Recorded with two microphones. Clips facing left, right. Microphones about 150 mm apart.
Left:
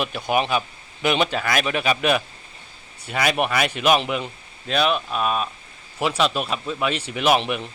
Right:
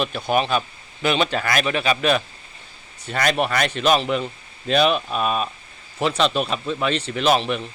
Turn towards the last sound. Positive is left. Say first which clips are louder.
# right 1 dB
turn(degrees=10)  # may be behind; listen again after turning